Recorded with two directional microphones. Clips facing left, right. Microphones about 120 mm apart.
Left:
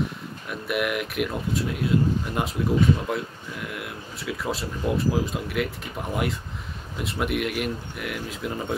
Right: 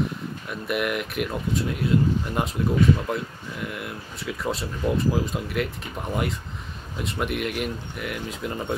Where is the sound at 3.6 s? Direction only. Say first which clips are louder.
Right 2 dB; centre (ahead or behind).